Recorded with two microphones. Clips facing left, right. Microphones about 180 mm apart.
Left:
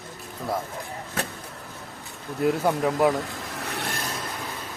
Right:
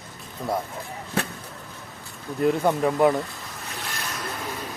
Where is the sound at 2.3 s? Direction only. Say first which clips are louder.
Right 1 dB; 5° left (ahead or behind).